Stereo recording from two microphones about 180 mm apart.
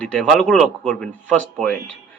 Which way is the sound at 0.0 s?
5° left (ahead or behind).